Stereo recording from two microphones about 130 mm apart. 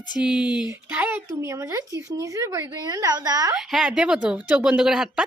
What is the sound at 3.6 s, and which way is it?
Speech, 5° right (ahead or behind).